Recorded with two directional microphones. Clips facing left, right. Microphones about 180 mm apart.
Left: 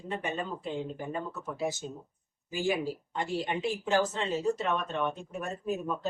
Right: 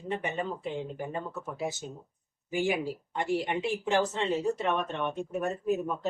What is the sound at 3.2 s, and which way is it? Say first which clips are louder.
A woman's voice: right 2 dB; 20° right (ahead or behind).